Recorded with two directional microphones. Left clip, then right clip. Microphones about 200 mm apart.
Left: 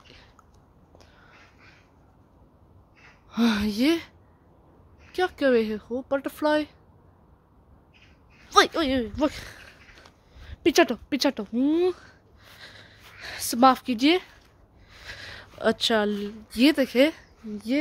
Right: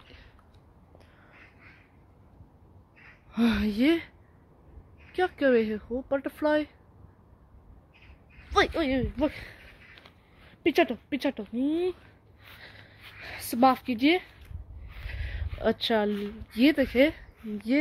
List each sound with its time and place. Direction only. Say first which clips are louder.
3.3 s speech: left 2 dB; 5° left (ahead or behind)
5.1 s speech: left 2 dB; 5° left (ahead or behind)
8.5 s speech: left 5 dB; 15° left (ahead or behind)
12.4 s a sound: left 2 dB; 5° left (ahead or behind)
15.5 s speech: left 3 dB; 10° left (ahead or behind)
16.1 s speech: left 2 dB; 5° right (ahead or behind)
16.5 s speech: left 2 dB; 10° left (ahead or behind)